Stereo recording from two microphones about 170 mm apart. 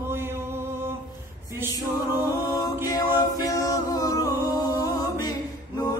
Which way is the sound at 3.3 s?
20° left (ahead or behind).